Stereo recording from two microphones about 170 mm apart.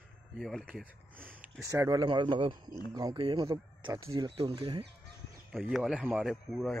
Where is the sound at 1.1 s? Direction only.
10° right (ahead or behind); by 4.8 s 30° right (ahead or behind).